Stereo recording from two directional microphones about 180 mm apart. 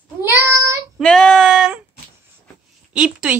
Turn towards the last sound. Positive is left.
turn(degrees=-5)  # may be behind; listen again after turning